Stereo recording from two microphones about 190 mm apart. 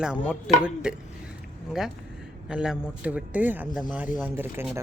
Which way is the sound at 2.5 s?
5° right (ahead or behind).